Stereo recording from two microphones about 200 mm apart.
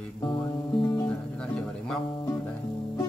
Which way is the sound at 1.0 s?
5° left (ahead or behind).